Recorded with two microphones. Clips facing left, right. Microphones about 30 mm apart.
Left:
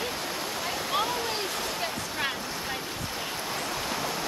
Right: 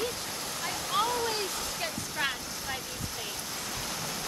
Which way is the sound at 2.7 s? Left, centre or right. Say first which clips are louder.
Left 4 dB; left.